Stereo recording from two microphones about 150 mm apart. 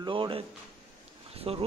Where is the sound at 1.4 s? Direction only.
35° right (ahead or behind).